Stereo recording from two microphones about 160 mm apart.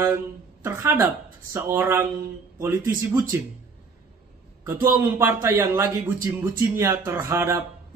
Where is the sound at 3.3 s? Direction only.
15° right (ahead or behind).